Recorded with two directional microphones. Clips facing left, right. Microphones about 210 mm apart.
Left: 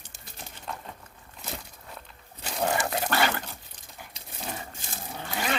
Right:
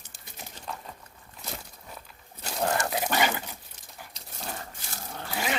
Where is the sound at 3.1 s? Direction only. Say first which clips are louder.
Even; 10° right (ahead or behind).